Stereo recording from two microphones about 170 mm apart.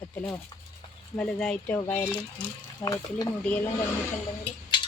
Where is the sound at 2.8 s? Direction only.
20° left (ahead or behind).